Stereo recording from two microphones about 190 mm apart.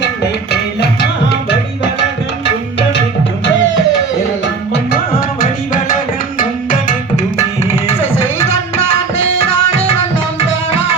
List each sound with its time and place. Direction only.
0.0 s music: 60° left (ahead or behind)
3.4 s music: 80° left
5.4 s music: 45° left (ahead or behind)
6.4 s tabla: 45° left (ahead or behind)
8.4 s music: 35° left (ahead or behind)